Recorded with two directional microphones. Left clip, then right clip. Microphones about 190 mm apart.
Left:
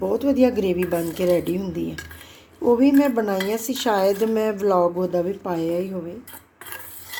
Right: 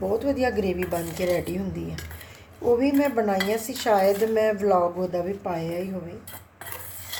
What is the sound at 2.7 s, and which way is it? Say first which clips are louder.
Speech: left 4 dB; 40° left (ahead or behind).